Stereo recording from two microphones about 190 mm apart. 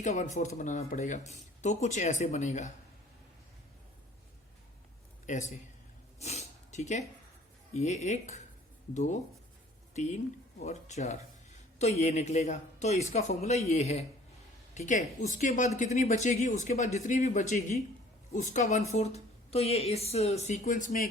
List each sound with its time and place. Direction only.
0.0 s speech: 40° left (ahead or behind)
5.2 s a man's voice: 40° left (ahead or behind)
6.1 s a sound: 35° left (ahead or behind)
7.7 s speech: 35° left (ahead or behind)